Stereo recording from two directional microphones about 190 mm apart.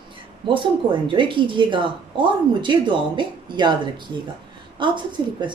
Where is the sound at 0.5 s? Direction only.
25° right (ahead or behind).